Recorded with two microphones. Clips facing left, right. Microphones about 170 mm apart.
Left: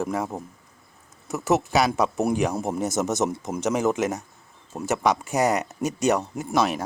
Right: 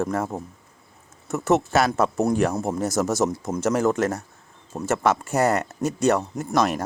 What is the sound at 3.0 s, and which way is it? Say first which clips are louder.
Speech: right 2 dB; centre (ahead or behind).